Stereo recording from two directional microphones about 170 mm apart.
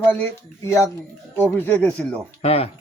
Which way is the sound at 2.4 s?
35° left (ahead or behind).